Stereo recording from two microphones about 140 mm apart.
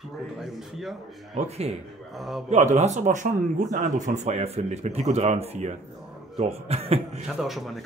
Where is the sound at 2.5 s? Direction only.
55° right (ahead or behind).